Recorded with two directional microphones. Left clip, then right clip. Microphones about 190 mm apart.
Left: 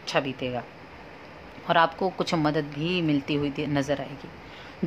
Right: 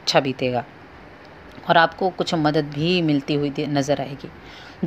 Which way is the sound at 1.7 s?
5° right (ahead or behind).